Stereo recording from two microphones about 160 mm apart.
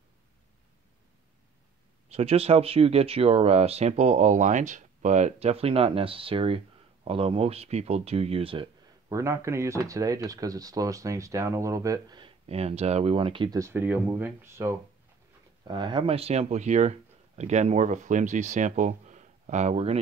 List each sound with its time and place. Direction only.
2.0 s speech: 40° right (ahead or behind)
9.1 s speech: 15° right (ahead or behind)
13.6 s speech: 15° right (ahead or behind)
15.6 s speech: 30° right (ahead or behind)